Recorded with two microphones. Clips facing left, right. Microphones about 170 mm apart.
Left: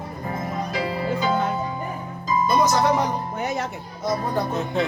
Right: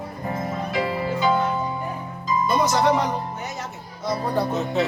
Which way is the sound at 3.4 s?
60° left (ahead or behind).